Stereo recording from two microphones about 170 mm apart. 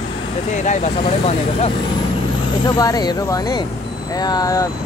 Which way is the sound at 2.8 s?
20° left (ahead or behind).